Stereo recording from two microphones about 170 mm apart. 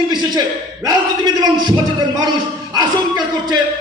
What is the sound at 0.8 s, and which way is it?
A man's voice, 25° right (ahead or behind).